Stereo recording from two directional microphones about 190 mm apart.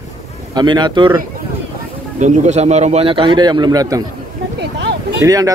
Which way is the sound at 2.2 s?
35° right (ahead or behind).